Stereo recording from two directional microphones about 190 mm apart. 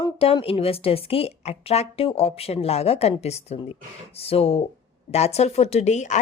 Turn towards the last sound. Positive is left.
turn(degrees=35)  # may be behind; listen again after turning